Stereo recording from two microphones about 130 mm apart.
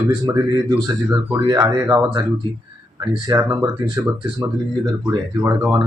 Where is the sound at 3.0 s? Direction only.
30° right (ahead or behind).